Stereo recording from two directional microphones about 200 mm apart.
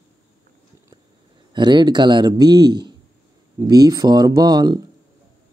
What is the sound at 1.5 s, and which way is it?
Speech, 20° right (ahead or behind).